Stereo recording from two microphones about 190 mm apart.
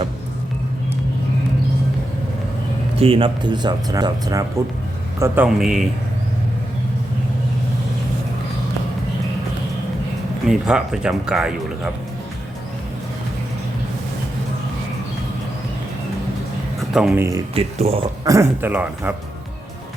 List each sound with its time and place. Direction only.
3.0 s speech: 30° right (ahead or behind); by 5.9 s centre (ahead or behind)
10.4 s speech: 5° right (ahead or behind)
16.9 s speech: 5° right (ahead or behind)
17.5 s speech: 30° right (ahead or behind)
18.3 s speech: 15° right (ahead or behind)